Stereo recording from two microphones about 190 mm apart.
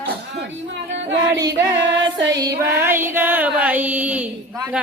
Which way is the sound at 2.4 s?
15° right (ahead or behind).